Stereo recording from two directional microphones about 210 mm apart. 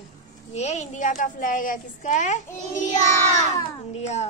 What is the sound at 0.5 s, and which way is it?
A child's voice, 30° left (ahead or behind).